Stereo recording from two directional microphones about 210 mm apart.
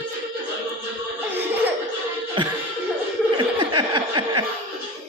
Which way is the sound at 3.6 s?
20° right (ahead or behind).